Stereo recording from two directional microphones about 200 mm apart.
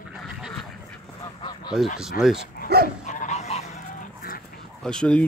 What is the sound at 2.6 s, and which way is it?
Dog, 50° right (ahead or behind).